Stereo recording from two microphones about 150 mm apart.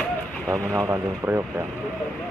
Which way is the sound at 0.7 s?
20° right (ahead or behind).